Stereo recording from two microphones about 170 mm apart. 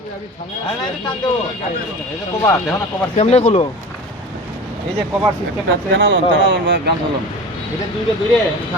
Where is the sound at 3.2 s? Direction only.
40° left (ahead or behind).